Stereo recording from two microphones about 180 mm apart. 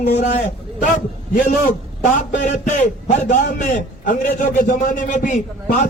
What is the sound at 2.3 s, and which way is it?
A man's voice, 45° left (ahead or behind).